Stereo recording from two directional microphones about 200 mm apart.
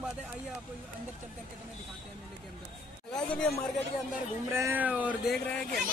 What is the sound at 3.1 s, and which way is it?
Speech, 5° left (ahead or behind).